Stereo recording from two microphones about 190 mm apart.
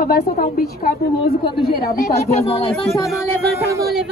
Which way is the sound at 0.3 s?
50° left (ahead or behind).